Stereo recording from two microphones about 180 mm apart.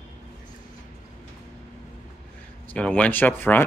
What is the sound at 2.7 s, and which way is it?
Speech, 5° left (ahead or behind).